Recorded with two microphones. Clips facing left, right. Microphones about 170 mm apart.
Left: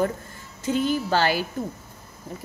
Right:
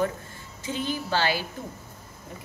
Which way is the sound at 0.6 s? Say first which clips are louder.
Left 7 dB; 45° left (ahead or behind).